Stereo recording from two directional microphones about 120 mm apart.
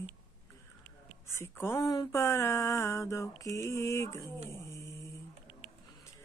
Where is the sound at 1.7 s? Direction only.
35° left (ahead or behind).